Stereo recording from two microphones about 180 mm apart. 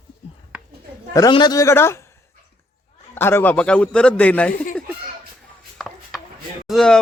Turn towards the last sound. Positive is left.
turn(degrees=0)  # may be behind; listen again after turning